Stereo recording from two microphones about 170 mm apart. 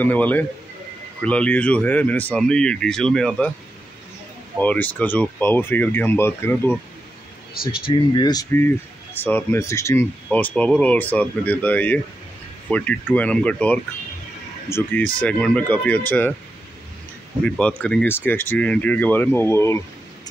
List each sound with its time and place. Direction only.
0.0 s speech: 10° left (ahead or behind)
4.6 s speech: 10° left (ahead or behind)
7.8 s speech: 25° left (ahead or behind)
17.4 s speech: 5° left (ahead or behind)